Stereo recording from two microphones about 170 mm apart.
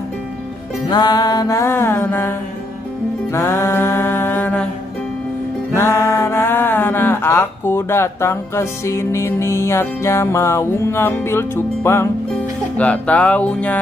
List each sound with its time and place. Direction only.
0.8 s music: 25° left (ahead or behind)
3.3 s mantra: 15° left (ahead or behind)
5.8 s speech: 15° left (ahead or behind)
12.7 s music: 10° left (ahead or behind)